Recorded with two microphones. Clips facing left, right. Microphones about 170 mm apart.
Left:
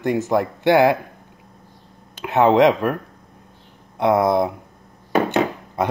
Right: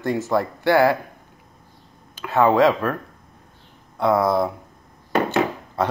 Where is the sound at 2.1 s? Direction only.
20° left (ahead or behind).